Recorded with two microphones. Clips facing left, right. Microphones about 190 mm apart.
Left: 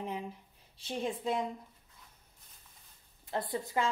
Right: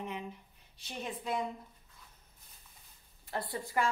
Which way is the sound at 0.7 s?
30° left (ahead or behind).